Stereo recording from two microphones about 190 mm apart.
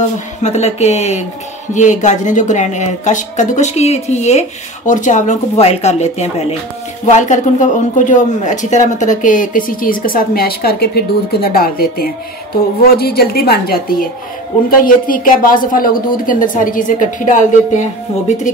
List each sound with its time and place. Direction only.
0.4 s a woman's voice: 35° left (ahead or behind)